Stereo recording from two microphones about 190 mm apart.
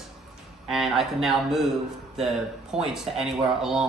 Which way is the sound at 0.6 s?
Centre (ahead or behind).